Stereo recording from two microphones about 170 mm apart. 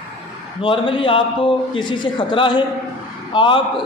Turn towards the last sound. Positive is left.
turn(degrees=30)  # may be behind; listen again after turning